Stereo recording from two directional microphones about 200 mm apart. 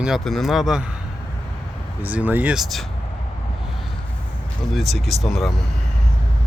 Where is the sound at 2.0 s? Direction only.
10° right (ahead or behind).